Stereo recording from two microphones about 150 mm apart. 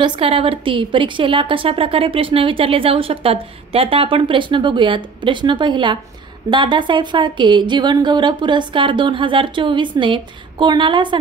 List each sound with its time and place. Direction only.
0.0 s a woman's voice: 35° right (ahead or behind)